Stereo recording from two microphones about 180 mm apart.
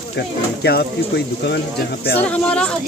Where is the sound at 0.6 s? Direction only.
65° left (ahead or behind).